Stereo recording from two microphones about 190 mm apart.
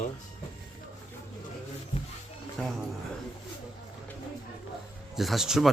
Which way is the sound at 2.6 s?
5° left (ahead or behind).